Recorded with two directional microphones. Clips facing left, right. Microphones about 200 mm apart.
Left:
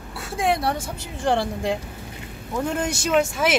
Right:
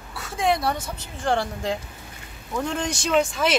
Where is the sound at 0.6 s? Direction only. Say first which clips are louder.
Left 1 dB; 10° left (ahead or behind).